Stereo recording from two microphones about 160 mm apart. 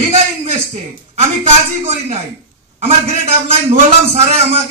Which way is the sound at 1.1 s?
45° right (ahead or behind).